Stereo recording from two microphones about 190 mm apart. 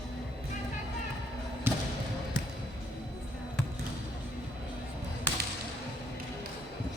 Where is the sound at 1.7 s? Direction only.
10° right (ahead or behind).